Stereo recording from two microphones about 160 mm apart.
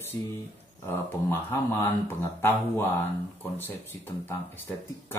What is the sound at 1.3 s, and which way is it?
Speech, 15° left (ahead or behind).